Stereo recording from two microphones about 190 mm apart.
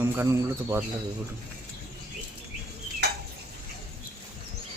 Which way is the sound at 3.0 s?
60° right (ahead or behind).